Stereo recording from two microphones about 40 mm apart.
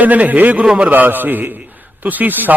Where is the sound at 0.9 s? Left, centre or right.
Right.